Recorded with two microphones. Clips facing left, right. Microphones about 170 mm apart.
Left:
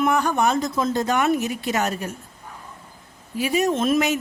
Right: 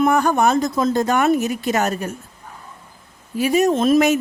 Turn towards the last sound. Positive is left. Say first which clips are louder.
# right 5 dB
turn(degrees=-40)  # may be behind; listen again after turning